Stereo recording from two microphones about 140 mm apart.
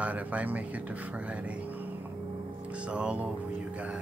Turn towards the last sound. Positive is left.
turn(degrees=-10)  # may be behind; listen again after turning